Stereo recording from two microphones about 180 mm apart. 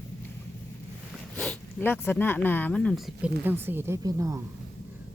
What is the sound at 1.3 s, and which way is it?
Speech, 5° left (ahead or behind).